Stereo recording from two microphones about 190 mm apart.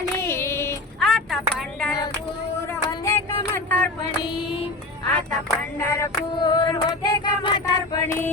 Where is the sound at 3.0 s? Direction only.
15° left (ahead or behind).